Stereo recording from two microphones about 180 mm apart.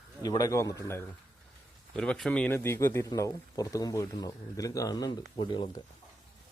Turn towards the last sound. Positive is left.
turn(degrees=25)  # may be behind; listen again after turning